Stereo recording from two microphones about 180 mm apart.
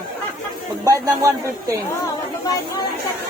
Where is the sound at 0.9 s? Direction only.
20° right (ahead or behind).